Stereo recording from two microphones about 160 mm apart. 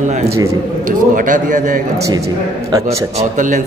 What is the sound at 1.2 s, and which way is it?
Speech, 55° right (ahead or behind).